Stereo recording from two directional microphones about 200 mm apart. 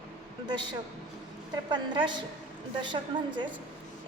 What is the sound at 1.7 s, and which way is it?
A woman's voice, 25° right (ahead or behind).